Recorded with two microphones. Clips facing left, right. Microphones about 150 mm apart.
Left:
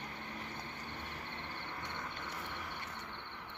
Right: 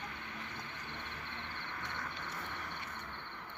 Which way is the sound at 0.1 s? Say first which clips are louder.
Left 1 dB; 35° left (ahead or behind).